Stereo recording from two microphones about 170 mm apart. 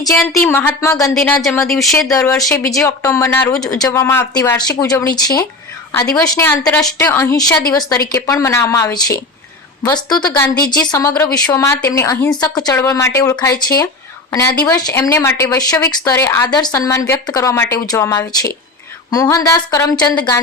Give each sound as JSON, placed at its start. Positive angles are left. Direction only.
{"t": 0.4, "sound": "speech", "side_deg": 10}
{"t": 1.1, "sound": "speech", "side_deg": 5}
{"t": 2.0, "sound": "speech", "side_deg": 15}